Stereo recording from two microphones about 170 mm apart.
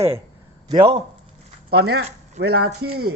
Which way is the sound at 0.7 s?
30° right (ahead or behind).